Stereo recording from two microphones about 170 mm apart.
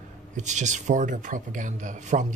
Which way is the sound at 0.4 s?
45° right (ahead or behind).